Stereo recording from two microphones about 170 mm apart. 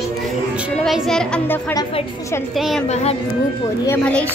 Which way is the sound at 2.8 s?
40° left (ahead or behind).